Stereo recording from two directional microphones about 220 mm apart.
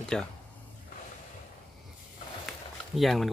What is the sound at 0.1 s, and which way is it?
Speech, 5° left (ahead or behind).